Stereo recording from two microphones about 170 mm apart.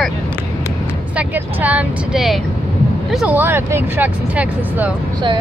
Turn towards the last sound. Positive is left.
turn(degrees=-10)  # may be behind; listen again after turning